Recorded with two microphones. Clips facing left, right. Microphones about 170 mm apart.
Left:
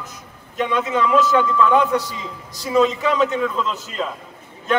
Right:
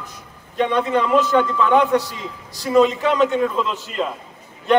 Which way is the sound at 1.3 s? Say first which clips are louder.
Even; centre (ahead or behind).